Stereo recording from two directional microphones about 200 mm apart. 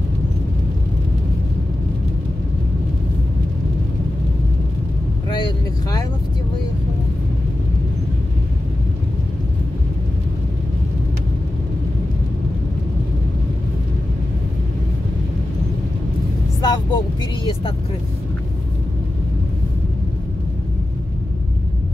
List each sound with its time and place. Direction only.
5.3 s vehicle: 20° left (ahead or behind)
16.6 s vehicle: 20° left (ahead or behind)